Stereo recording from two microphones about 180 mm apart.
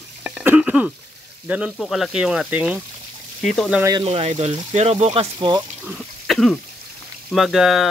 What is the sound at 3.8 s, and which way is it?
Speech, 20° right (ahead or behind).